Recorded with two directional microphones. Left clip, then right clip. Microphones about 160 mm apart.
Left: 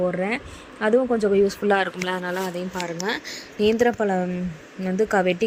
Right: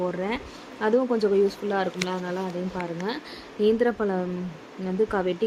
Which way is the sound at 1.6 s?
40° left (ahead or behind).